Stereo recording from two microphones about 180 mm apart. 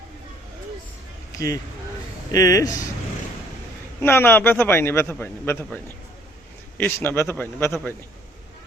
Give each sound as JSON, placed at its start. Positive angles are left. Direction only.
{"t": 1.4, "sound": "a man's voice", "side_deg": 15}
{"t": 4.0, "sound": "a man's voice", "side_deg": 10}